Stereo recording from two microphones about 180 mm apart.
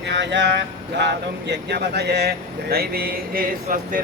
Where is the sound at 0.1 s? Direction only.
75° right (ahead or behind).